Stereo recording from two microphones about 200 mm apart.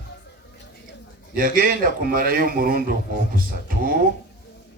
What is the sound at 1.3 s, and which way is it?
Speech, 45° right (ahead or behind).